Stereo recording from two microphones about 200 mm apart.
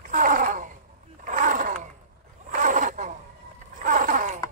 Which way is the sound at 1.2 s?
40° right (ahead or behind).